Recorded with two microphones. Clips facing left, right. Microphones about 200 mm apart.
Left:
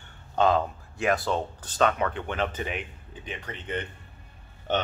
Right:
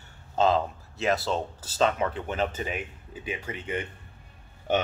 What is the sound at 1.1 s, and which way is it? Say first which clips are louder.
Speech: left 1 dB; 5° right (ahead or behind).